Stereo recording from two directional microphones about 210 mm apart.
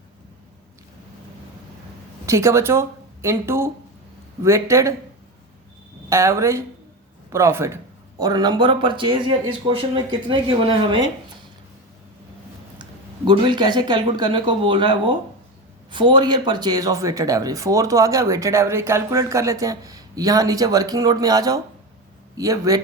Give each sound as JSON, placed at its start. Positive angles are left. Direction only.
{"t": 2.2, "sound": "speech", "side_deg": -15}
{"t": 6.1, "sound": "speech", "side_deg": -15}
{"t": 12.8, "sound": "speech", "side_deg": -20}